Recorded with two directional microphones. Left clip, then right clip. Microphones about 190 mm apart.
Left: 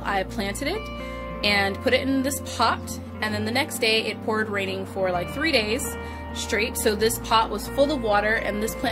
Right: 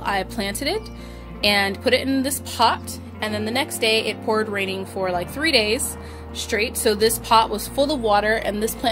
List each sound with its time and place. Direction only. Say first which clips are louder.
0.0 s speech: right 2 dB; 20° right (ahead or behind)